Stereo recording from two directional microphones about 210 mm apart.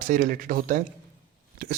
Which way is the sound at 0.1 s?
40° right (ahead or behind).